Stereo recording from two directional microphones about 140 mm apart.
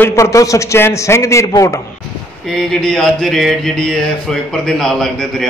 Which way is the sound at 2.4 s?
5° left (ahead or behind).